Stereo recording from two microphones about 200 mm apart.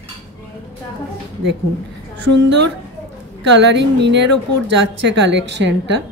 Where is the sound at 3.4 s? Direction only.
60° right (ahead or behind).